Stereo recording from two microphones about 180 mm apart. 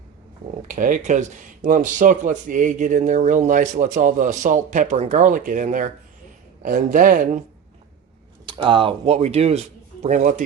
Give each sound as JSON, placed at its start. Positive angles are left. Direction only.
{"t": 0.7, "sound": "speech", "side_deg": -50}
{"t": 8.4, "sound": "speech", "side_deg": -30}